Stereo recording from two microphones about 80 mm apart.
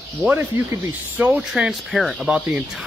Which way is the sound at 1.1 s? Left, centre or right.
Centre.